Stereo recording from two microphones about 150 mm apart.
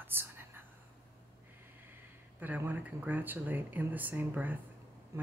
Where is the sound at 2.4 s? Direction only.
10° right (ahead or behind).